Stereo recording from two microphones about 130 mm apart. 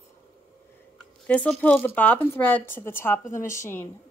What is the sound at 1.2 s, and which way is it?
A woman's voice, 10° left (ahead or behind).